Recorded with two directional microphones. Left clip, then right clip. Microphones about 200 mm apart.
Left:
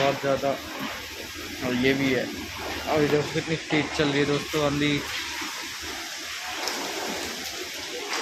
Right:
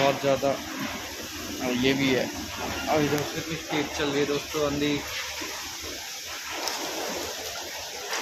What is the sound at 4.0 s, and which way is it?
Speech, 45° left (ahead or behind).